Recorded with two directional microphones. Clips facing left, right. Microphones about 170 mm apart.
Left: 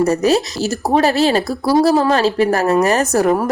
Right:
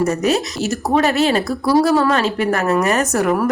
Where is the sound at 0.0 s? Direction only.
30° left (ahead or behind).